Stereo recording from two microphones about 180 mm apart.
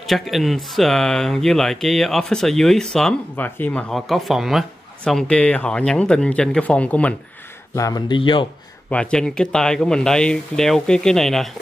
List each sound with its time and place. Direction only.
0.0 s speech: centre (ahead or behind)
7.7 s speech: 20° left (ahead or behind)
8.9 s speech: 5° left (ahead or behind)